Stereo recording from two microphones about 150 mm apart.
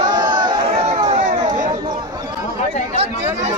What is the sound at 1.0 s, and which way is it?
Run, 50° right (ahead or behind).